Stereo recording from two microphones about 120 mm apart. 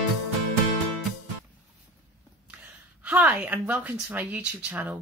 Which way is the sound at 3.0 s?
10° right (ahead or behind).